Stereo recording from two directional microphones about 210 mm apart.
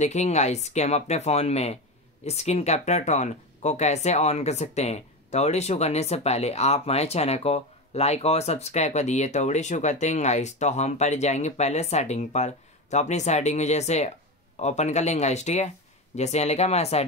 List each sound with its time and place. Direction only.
0.0 s speech: 35° left (ahead or behind)